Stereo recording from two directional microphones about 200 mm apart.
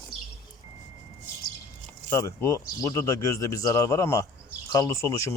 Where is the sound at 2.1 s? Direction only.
15° left (ahead or behind).